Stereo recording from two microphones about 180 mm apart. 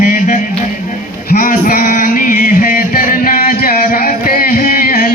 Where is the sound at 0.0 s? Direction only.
50° left (ahead or behind).